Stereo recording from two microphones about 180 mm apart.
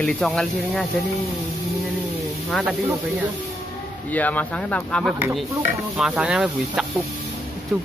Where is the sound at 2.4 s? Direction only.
Centre (ahead or behind).